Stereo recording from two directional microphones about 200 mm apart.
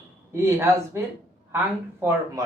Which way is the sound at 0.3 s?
15° right (ahead or behind).